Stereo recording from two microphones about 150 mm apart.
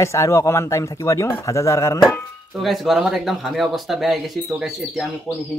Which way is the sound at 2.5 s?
Centre (ahead or behind).